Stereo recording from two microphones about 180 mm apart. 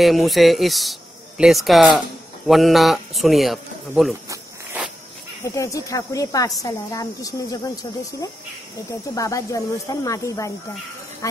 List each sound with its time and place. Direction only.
0.0 s a man's voice: centre (ahead or behind)
5.4 s speech: 15° left (ahead or behind)